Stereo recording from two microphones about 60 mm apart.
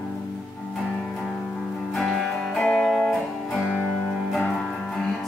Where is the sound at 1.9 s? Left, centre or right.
Centre.